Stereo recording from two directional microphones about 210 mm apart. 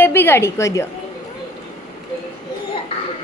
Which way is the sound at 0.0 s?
10° left (ahead or behind).